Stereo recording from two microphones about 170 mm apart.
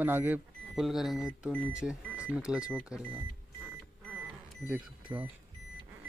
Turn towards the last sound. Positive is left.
turn(degrees=-10)  # may be behind; listen again after turning